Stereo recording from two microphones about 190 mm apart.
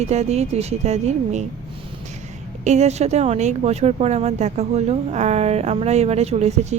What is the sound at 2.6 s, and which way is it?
A woman's voice, 35° right (ahead or behind).